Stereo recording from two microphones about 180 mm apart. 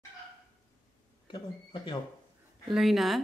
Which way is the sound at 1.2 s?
25° left (ahead or behind).